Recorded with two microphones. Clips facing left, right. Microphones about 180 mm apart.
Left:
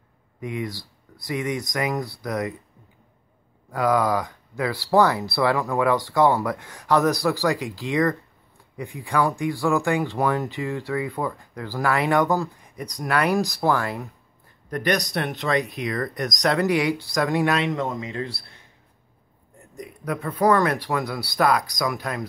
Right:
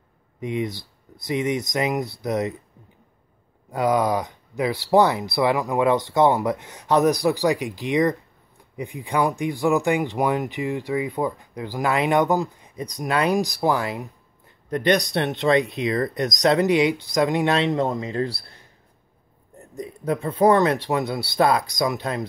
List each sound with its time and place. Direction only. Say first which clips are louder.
0.4 s speech: right 3 dB; 20° right (ahead or behind)
3.7 s speech: right 1 dB; 20° right (ahead or behind); by 18.4 s 35° right (ahead or behind)
19.8 s speech: right 4 dB; 25° right (ahead or behind)